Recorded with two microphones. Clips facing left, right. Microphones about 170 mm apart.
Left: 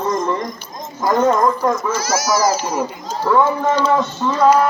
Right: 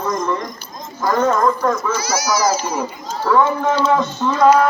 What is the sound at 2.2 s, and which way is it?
Speech, centre (ahead or behind).